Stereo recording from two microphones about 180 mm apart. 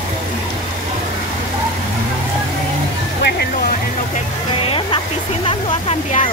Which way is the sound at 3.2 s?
65° left (ahead or behind).